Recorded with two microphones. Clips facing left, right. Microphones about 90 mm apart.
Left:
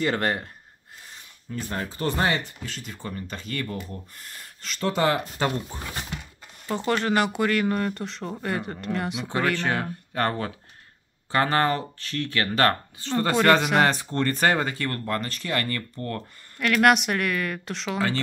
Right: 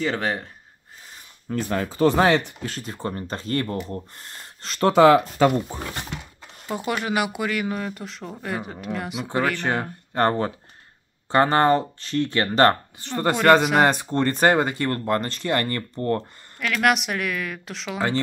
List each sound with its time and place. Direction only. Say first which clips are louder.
0.0 s speech: even; 5° left (ahead or behind)
1.5 s speech: right 6 dB; 80° right
2.6 s speech: right 6 dB; 45° right (ahead or behind)
4.7 s speech: right 9 dB; 75° right (ahead or behind)
6.7 s speech: left 1 dB; 10° right (ahead or behind)
10.1 s speech: right 5 dB; 25° right (ahead or behind)
16.5 s speech: left 2 dB; centre (ahead or behind)